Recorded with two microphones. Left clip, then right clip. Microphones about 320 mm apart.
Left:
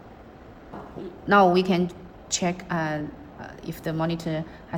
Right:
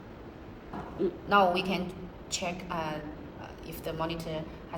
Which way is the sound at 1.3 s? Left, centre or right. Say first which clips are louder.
Left 7 dB; left.